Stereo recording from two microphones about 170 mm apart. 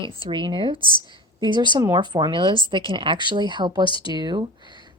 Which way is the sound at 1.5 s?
25° right (ahead or behind).